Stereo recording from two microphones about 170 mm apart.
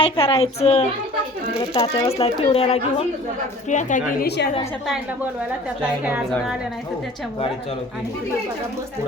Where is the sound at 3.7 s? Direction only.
45° left (ahead or behind).